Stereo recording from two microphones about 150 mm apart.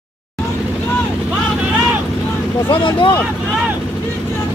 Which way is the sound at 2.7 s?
35° left (ahead or behind).